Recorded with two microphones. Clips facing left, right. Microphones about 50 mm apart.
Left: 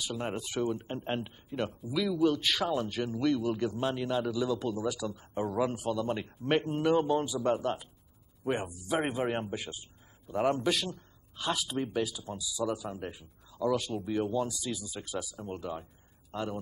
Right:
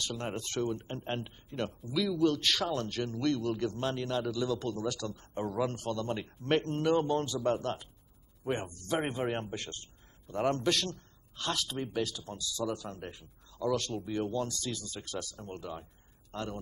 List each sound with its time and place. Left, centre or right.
0.0 s speech: centre